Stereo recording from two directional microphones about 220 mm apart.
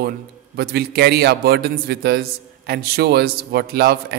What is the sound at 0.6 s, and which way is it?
A man's voice, 45° right (ahead or behind).